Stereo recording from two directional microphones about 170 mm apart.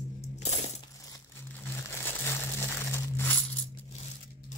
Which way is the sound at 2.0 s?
15° left (ahead or behind).